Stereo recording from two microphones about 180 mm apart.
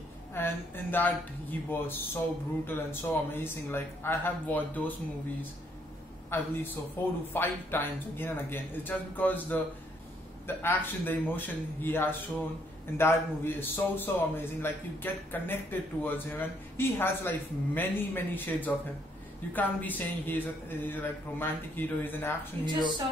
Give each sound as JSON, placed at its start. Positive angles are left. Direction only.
{"t": 0.3, "sound": "a man's voice", "side_deg": 10}
{"t": 6.3, "sound": "a man's voice", "side_deg": 10}
{"t": 22.7, "sound": "speech", "side_deg": -25}